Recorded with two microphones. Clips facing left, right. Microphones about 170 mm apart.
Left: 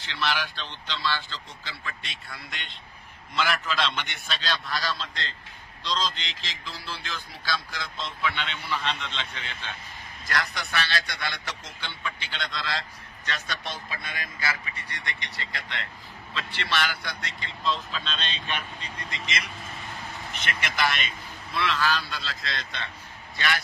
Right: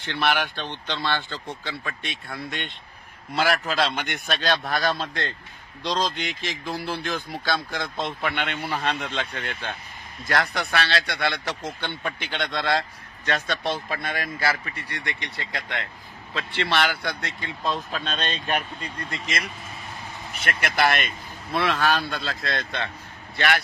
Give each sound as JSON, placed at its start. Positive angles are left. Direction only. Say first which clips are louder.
{"t": 0.0, "sound": "speech", "louder": "right 5 dB", "side_deg": -55}
{"t": 20.4, "sound": "speech", "louder": "right 5 dB", "side_deg": -50}